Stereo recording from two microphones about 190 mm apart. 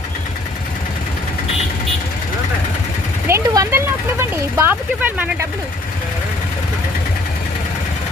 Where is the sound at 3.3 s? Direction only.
15° right (ahead or behind).